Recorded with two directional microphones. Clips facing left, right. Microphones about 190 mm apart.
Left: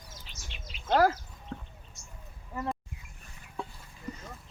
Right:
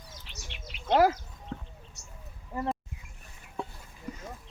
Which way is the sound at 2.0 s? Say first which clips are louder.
Right 1 dB; 70° right (ahead or behind).